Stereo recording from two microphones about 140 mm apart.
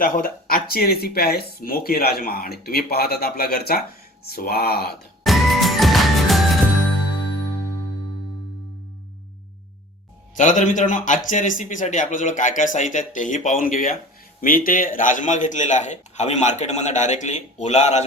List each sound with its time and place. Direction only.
0.0 s speech: 90° left
5.2 s music: centre (ahead or behind)
10.3 s a man's voice: 65° left (ahead or behind)
14.4 s a man's voice: 90° left; by 18.0 s 55° left (ahead or behind)